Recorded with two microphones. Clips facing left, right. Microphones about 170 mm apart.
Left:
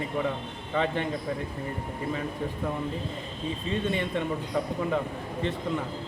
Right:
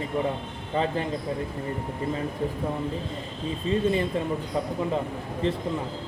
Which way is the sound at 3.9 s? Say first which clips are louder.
Right 3 dB; 35° right (ahead or behind).